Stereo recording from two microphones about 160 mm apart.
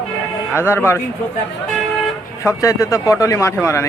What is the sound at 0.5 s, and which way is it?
Speech, 15° left (ahead or behind).